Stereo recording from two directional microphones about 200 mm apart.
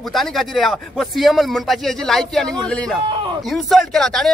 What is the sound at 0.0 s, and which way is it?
Speech, centre (ahead or behind).